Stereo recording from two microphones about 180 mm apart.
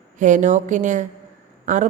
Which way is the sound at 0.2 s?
45° right (ahead or behind).